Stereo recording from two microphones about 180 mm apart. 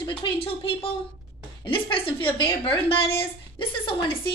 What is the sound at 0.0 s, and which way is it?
A woman's voice, 30° left (ahead or behind).